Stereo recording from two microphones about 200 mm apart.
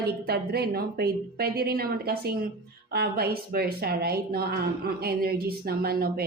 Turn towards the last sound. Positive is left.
turn(degrees=-50)  # may be behind; listen again after turning